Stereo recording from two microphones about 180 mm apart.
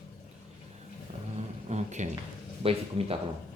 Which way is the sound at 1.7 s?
40° right (ahead or behind).